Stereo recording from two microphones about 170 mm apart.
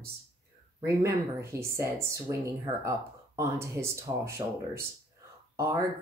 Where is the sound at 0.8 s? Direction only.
15° right (ahead or behind).